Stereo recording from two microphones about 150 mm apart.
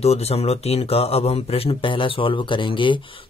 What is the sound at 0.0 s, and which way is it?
Speech, 45° left (ahead or behind).